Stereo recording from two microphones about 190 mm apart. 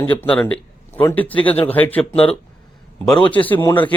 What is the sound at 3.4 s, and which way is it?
Speech, 10° left (ahead or behind).